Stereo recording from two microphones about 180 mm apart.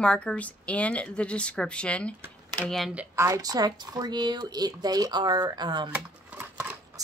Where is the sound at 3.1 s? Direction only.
15° right (ahead or behind).